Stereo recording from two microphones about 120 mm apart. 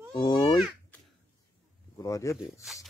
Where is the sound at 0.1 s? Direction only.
40° left (ahead or behind).